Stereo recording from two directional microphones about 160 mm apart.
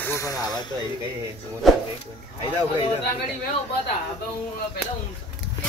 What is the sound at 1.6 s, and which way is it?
Speech, centre (ahead or behind).